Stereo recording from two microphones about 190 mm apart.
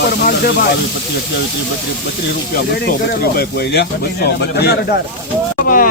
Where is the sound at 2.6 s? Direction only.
55° left (ahead or behind).